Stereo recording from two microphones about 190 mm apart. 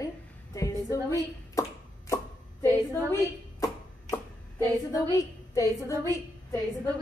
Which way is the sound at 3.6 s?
15° left (ahead or behind).